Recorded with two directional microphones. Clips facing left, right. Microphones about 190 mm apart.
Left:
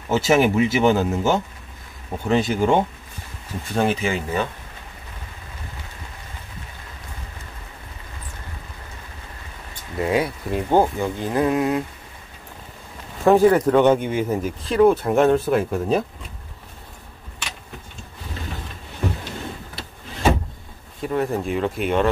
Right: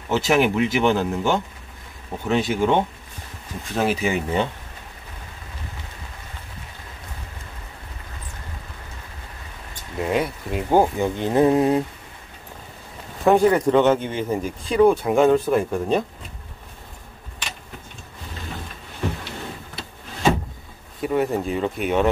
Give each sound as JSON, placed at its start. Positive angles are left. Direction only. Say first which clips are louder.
{"t": 0.1, "sound": "speech", "louder": "left 2 dB", "side_deg": 0}
{"t": 9.9, "sound": "speech", "louder": "left 1 dB", "side_deg": 0}
{"t": 10.7, "sound": "speech", "louder": "right 1 dB", "side_deg": -15}
{"t": 13.2, "sound": "speech", "louder": "left 2 dB", "side_deg": 0}
{"t": 21.0, "sound": "speech", "louder": "right 1 dB", "side_deg": -5}